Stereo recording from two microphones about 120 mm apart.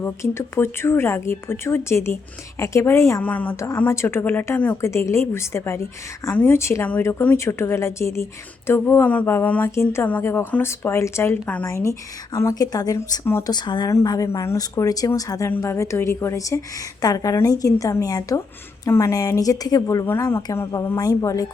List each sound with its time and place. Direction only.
0.0 s speech: 20° left (ahead or behind)
3.2 s a woman's voice: 15° left (ahead or behind)
13.5 s speech: 40° left (ahead or behind)